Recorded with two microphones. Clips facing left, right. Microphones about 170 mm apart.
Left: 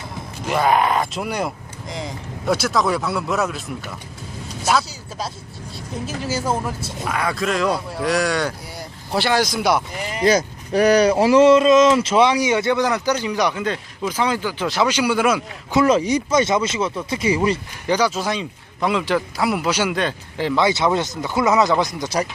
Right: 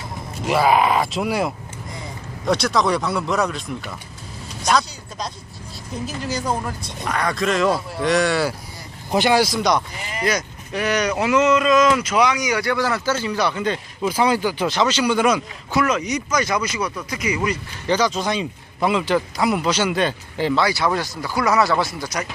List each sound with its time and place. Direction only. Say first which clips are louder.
0.4 s speech: right 1 dB; 5° right (ahead or behind)
4.6 s speech: even; 5° left (ahead or behind)
9.6 s speech: even; 5° left (ahead or behind)
10.2 s speech: left 6 dB; 30° left (ahead or behind)
13.6 s speech: right 1 dB; centre (ahead or behind)
14.1 s speech: right 3 dB; 10° right (ahead or behind)
14.7 s speech: left 2 dB; 10° left (ahead or behind)
15.7 s speech: left 4 dB; 30° left (ahead or behind)
17.8 s speech: even; 10° left (ahead or behind)
20.0 s speech: right 1 dB; centre (ahead or behind)
20.6 s speech: left 5 dB; 20° left (ahead or behind)